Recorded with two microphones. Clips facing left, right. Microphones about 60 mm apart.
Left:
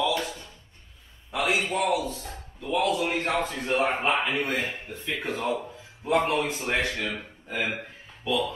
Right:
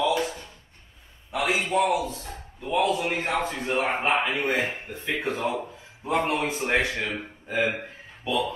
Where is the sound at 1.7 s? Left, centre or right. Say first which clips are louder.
Right 2 dB; right; by 3.8 s centre.